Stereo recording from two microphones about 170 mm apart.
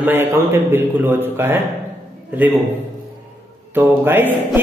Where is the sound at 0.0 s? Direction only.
15° right (ahead or behind).